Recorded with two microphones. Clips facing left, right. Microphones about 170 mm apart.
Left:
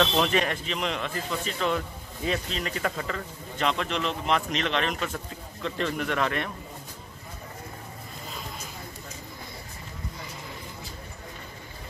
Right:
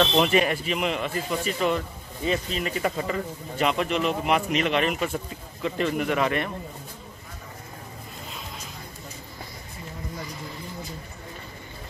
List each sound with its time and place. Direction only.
0.0 s a man's voice: 10° right (ahead or behind)